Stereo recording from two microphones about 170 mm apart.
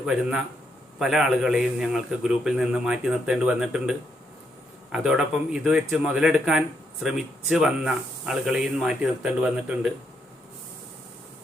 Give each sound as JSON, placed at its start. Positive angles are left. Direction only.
{"t": 0.0, "sound": "a man's voice", "side_deg": -5}